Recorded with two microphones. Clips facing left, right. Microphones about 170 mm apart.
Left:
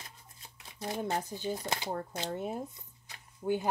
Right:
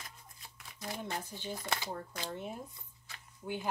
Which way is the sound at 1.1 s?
40° left (ahead or behind).